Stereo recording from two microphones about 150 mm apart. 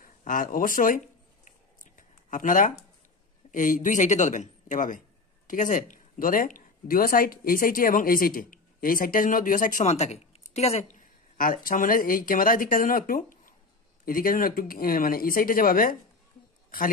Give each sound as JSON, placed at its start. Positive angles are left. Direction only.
{"t": 0.0, "sound": "speech", "side_deg": 65}
{"t": 2.0, "sound": "a sound", "side_deg": 60}
{"t": 3.5, "sound": "speech", "side_deg": 60}